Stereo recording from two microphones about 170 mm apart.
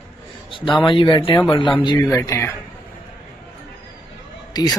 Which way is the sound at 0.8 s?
30° left (ahead or behind).